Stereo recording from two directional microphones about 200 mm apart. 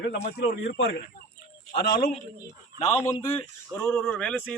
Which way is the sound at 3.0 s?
15° left (ahead or behind).